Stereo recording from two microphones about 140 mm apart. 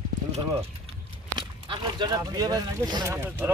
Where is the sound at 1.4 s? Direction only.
35° right (ahead or behind).